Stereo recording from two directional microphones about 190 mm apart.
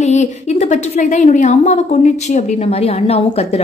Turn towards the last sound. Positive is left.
turn(degrees=30)  # may be behind; listen again after turning